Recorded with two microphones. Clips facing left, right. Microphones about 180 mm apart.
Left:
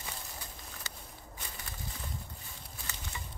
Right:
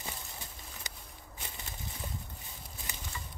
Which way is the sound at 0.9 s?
15° right (ahead or behind).